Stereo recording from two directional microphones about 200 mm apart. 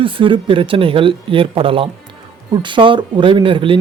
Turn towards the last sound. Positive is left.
turn(degrees=-25)  # may be behind; listen again after turning